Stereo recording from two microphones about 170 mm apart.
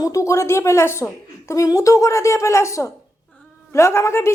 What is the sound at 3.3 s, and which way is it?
Cat, 15° left (ahead or behind).